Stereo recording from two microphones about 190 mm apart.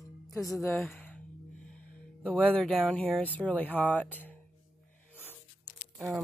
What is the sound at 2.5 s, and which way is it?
Speech, 5° left (ahead or behind).